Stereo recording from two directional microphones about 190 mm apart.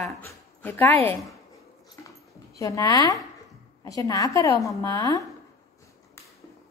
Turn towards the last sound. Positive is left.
turn(degrees=15)  # may be behind; listen again after turning